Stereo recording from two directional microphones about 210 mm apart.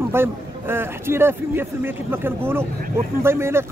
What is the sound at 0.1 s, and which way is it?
Speech, 10° right (ahead or behind).